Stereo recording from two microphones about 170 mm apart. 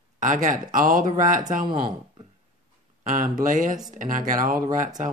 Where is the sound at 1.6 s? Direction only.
30° right (ahead or behind).